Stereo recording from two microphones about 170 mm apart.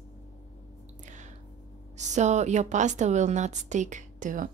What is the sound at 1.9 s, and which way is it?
A woman's voice, 45° right (ahead or behind).